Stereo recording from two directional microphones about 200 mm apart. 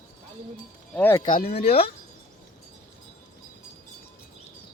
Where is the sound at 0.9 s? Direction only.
10° left (ahead or behind).